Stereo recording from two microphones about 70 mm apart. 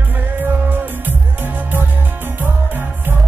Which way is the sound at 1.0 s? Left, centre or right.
Right.